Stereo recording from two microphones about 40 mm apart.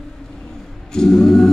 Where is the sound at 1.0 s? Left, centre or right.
Centre.